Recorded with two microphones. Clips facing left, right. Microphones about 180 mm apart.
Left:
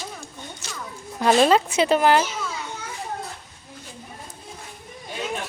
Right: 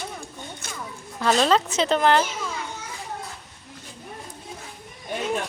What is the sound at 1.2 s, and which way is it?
Speech, 15° left (ahead or behind).